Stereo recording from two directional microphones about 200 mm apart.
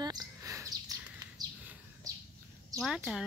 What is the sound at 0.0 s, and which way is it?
Bird, 20° right (ahead or behind).